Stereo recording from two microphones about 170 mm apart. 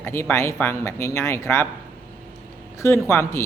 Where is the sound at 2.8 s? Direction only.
15° left (ahead or behind).